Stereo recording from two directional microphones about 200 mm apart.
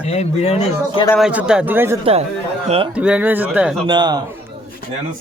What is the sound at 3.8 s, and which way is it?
Speech, 20° right (ahead or behind).